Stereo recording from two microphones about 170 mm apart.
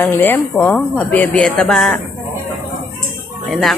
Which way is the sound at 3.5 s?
Centre (ahead or behind).